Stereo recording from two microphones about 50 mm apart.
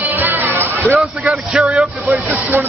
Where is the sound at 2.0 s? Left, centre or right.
Right.